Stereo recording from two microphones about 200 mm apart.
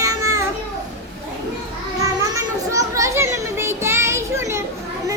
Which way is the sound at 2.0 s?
15° right (ahead or behind).